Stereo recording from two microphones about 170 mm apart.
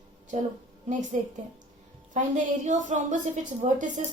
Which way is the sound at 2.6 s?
45° right (ahead or behind).